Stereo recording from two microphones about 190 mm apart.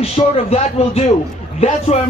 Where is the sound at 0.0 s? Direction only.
35° left (ahead or behind).